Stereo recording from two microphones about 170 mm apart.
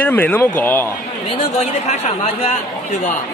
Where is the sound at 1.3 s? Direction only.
40° left (ahead or behind).